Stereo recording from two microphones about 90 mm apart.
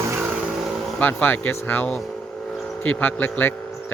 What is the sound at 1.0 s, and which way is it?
Speech, 20° left (ahead or behind).